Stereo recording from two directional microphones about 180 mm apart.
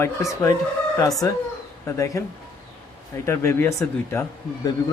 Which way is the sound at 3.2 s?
15° left (ahead or behind).